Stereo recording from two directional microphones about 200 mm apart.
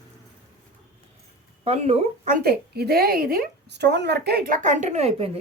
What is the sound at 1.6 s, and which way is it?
Speech, 30° right (ahead or behind).